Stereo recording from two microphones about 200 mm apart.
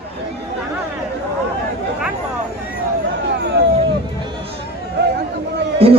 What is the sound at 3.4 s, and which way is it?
Vehicle, 55° right (ahead or behind).